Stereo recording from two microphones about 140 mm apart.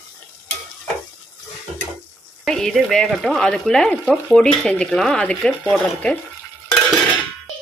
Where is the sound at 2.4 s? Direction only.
Centre (ahead or behind).